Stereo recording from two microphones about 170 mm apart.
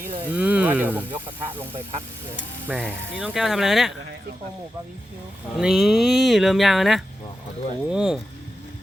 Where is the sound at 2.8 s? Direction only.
5° right (ahead or behind).